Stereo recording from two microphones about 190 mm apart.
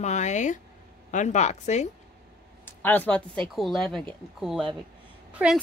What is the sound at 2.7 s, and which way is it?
Speech, 10° left (ahead or behind).